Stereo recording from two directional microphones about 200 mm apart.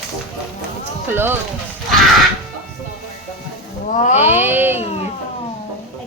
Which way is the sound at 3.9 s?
35° left (ahead or behind).